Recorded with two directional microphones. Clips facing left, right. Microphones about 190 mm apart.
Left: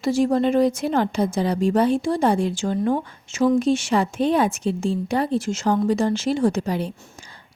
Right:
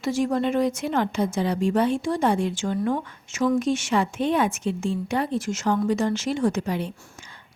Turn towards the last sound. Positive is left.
turn(degrees=35)  # may be behind; listen again after turning